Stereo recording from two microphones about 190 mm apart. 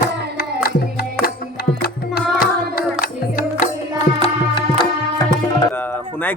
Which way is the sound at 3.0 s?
50° left (ahead or behind).